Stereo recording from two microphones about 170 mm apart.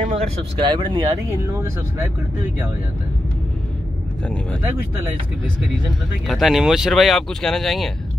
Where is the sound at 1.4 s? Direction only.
15° right (ahead or behind).